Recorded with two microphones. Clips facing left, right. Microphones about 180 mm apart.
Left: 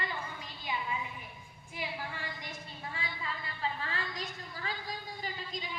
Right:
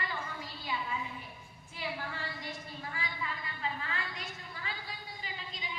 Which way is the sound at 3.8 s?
35° left (ahead or behind).